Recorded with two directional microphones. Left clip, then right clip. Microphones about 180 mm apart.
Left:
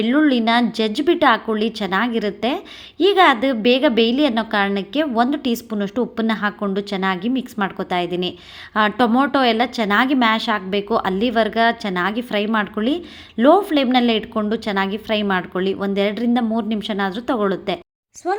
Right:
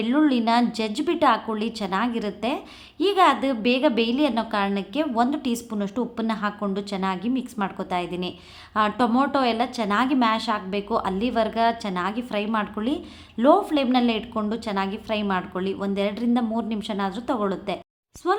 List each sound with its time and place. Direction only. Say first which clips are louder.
0.0 s a woman's voice: left 5 dB; 15° left (ahead or behind)